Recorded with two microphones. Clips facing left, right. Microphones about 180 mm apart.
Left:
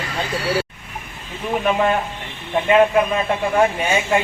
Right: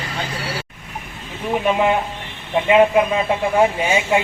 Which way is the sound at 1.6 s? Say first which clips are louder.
Right 1 dB; 15° right (ahead or behind).